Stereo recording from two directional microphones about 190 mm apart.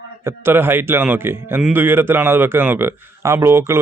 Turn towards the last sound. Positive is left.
turn(degrees=-15)  # may be behind; listen again after turning